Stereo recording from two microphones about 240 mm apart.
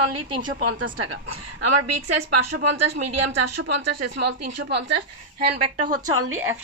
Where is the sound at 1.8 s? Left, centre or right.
Right.